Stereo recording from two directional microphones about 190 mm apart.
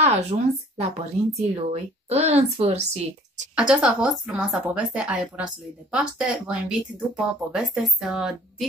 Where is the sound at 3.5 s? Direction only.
5° right (ahead or behind).